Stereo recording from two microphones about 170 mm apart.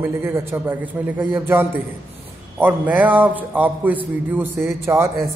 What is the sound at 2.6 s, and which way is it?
A man's voice, 10° right (ahead or behind).